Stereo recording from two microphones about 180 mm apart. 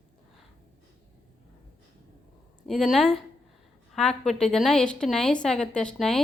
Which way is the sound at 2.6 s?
Centre (ahead or behind).